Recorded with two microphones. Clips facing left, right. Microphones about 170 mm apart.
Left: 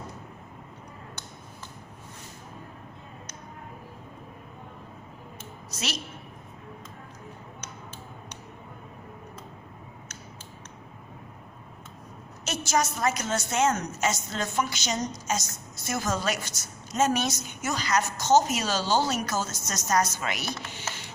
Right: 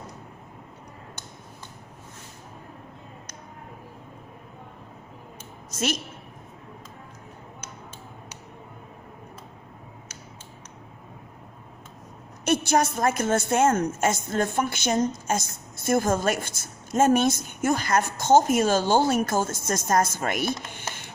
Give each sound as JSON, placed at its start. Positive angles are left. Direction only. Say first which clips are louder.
{"t": 5.7, "sound": "a woman's voice", "louder": "right 7 dB", "side_deg": -50}
{"t": 12.5, "sound": "a woman's voice", "louder": "right 5 dB", "side_deg": -55}